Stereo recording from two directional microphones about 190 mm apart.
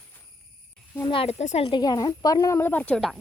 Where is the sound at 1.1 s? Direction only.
30° left (ahead or behind); by 3.2 s centre (ahead or behind).